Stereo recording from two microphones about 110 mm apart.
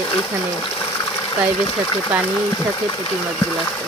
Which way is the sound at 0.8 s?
30° left (ahead or behind).